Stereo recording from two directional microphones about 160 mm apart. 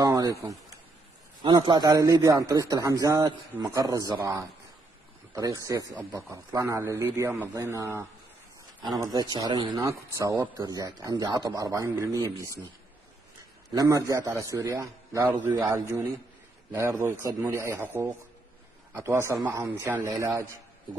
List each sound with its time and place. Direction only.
0.0 s a man's voice: 20° right (ahead or behind)
13.7 s a man's voice: 20° right (ahead or behind)